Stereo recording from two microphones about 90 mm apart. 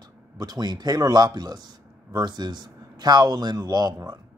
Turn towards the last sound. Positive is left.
turn(degrees=-50)  # may be behind; listen again after turning